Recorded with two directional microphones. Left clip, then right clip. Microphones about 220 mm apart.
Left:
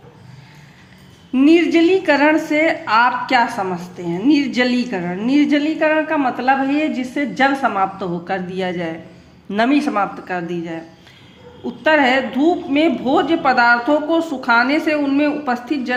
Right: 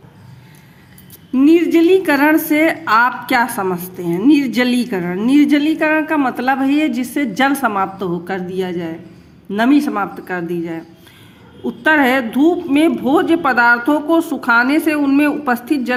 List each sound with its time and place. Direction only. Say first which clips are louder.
1.3 s a woman's voice: right 1 dB; 15° right (ahead or behind)